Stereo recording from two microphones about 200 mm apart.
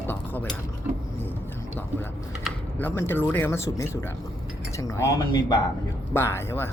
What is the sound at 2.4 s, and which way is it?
Speech, 10° left (ahead or behind).